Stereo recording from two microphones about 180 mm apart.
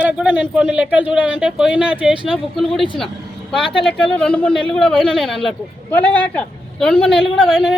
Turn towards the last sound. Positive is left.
turn(degrees=0)  # may be behind; listen again after turning